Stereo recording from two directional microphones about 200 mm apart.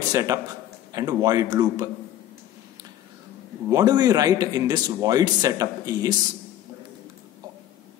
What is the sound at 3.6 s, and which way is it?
Speech, 20° right (ahead or behind).